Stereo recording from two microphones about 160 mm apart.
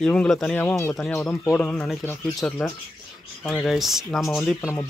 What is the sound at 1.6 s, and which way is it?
Speech, 5° left (ahead or behind).